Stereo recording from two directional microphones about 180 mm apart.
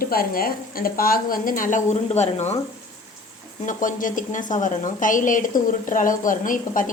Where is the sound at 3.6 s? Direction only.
45° left (ahead or behind).